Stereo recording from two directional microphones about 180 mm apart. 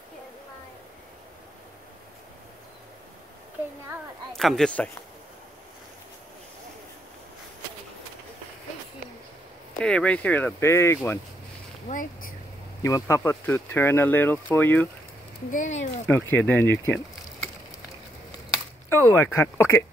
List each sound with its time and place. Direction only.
4.3 s speech: centre (ahead or behind)
9.8 s speech: 5° left (ahead or behind)
11.9 s speech: 50° left (ahead or behind)
12.8 s speech: 15° left (ahead or behind)
15.5 s speech: 45° left (ahead or behind)
16.1 s speech: 10° left (ahead or behind)
18.9 s speech: 15° left (ahead or behind)